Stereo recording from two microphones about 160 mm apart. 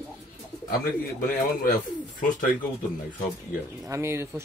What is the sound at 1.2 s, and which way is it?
Speech, 65° left (ahead or behind).